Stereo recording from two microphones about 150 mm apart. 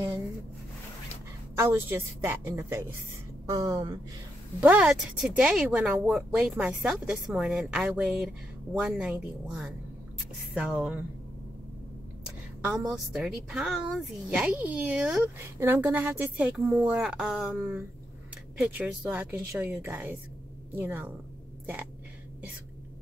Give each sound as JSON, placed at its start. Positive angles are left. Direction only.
{"t": 1.5, "sound": "a woman's voice", "side_deg": -15}
{"t": 4.6, "sound": "a woman's voice", "side_deg": -10}
{"t": 12.6, "sound": "a woman's voice", "side_deg": -10}
{"t": 15.3, "sound": "a woman's voice", "side_deg": -15}